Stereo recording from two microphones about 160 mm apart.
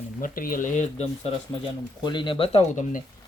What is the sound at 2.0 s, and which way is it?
Speech, 30° left (ahead or behind).